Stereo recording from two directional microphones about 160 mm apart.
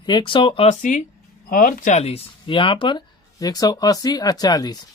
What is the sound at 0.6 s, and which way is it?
Speech, 50° left (ahead or behind).